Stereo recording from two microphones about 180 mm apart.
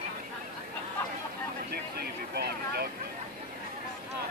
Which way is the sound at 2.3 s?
60° right (ahead or behind).